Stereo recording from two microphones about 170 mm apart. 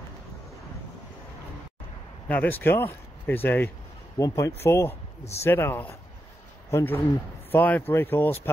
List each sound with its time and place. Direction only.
2.2 s speech: 10° left (ahead or behind)